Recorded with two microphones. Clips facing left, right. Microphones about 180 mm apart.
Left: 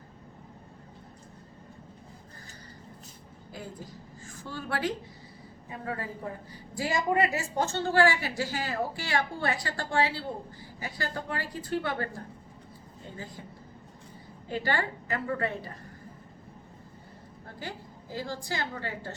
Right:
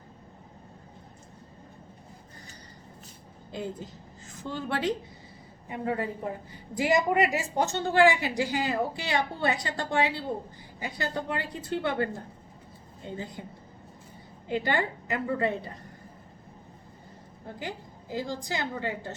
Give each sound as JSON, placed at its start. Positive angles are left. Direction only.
{"t": 3.5, "sound": "a woman's voice", "side_deg": -25}
{"t": 14.4, "sound": "a woman's voice", "side_deg": -20}
{"t": 17.6, "sound": "a woman's voice", "side_deg": -20}